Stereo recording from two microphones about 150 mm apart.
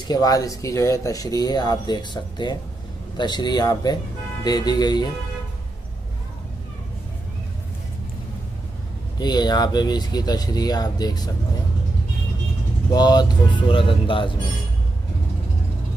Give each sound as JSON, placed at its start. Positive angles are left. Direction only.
{"t": 0.1, "sound": "speech", "side_deg": 25}
{"t": 9.2, "sound": "speech", "side_deg": 30}
{"t": 12.9, "sound": "speech", "side_deg": 30}